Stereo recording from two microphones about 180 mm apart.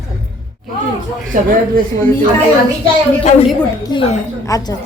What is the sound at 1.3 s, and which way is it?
Speech, 45° right (ahead or behind).